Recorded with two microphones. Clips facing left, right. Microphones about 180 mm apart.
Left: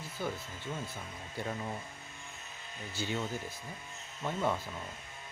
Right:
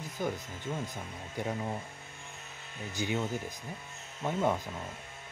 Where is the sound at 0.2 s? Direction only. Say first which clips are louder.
Right 3 dB; 15° right (ahead or behind).